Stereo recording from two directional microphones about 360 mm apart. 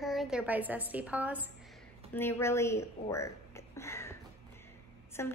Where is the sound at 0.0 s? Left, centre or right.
Centre.